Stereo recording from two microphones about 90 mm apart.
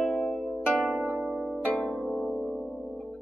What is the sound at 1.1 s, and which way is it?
Harp, 10° right (ahead or behind).